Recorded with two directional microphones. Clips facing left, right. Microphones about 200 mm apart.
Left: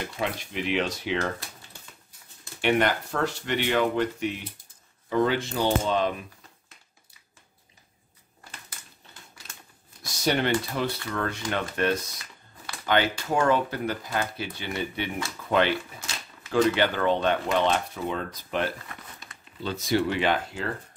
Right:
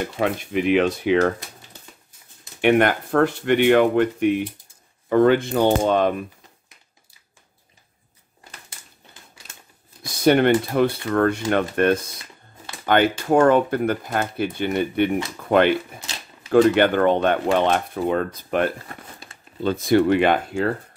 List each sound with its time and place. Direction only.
0.2 s speech: 55° right (ahead or behind)
2.6 s speech: 55° right (ahead or behind)
10.0 s speech: 55° right (ahead or behind)
18.9 s crumpling: 30° right (ahead or behind)
19.6 s speech: 55° right (ahead or behind)